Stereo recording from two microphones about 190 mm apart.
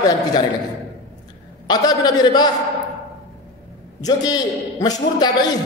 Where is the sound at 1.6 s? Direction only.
20° left (ahead or behind).